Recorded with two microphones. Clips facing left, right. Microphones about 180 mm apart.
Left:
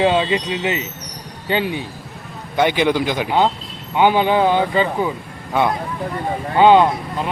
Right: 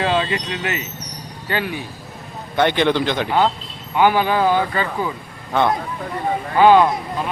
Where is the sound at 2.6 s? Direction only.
10° left (ahead or behind).